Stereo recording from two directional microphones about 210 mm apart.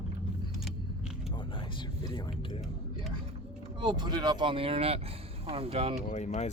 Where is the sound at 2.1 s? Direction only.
20° left (ahead or behind).